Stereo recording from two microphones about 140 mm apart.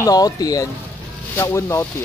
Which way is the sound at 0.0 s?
25° left (ahead or behind).